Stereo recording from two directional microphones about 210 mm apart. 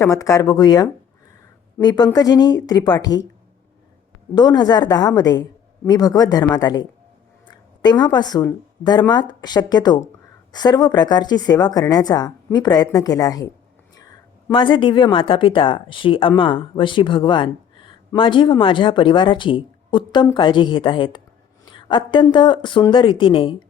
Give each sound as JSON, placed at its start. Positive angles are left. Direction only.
{"t": 0.0, "sound": "speech", "side_deg": 15}
{"t": 4.4, "sound": "a woman's voice", "side_deg": 20}
{"t": 14.5, "sound": "speech", "side_deg": 20}